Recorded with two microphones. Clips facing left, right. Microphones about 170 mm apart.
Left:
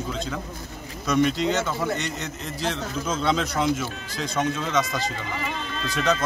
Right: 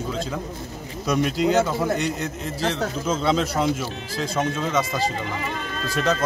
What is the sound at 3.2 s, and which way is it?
Speech, 5° right (ahead or behind).